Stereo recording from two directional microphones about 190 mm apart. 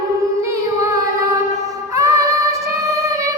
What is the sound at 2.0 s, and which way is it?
Music, 15° right (ahead or behind).